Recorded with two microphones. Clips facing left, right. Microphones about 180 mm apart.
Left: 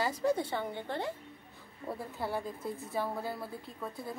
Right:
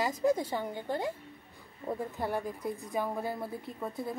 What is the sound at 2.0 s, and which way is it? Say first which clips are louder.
A woman's voice: right 2 dB; 15° right (ahead or behind).